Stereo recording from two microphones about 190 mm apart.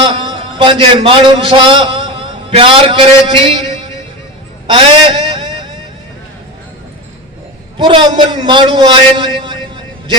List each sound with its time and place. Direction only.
0.0 s a man's voice: 25° right (ahead or behind)
7.8 s a man's voice: 25° right (ahead or behind)